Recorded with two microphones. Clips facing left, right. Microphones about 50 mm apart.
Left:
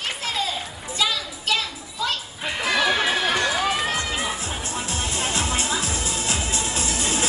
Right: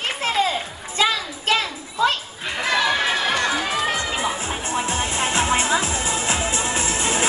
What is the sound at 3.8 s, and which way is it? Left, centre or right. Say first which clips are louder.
Music: right 2 dB; right.